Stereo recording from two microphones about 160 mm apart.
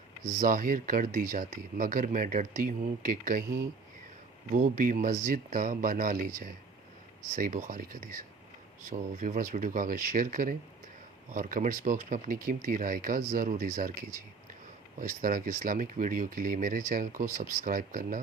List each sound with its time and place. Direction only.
0.3 s speech: 55° right (ahead or behind)